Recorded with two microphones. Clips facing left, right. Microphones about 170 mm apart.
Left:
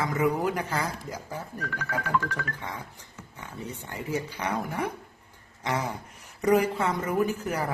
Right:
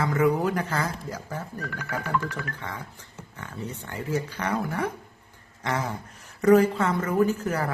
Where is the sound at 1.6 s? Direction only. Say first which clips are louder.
Left 2 dB; 10° right (ahead or behind).